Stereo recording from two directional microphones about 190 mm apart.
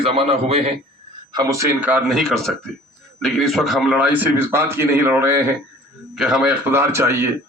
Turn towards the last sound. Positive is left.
turn(degrees=-15)  # may be behind; listen again after turning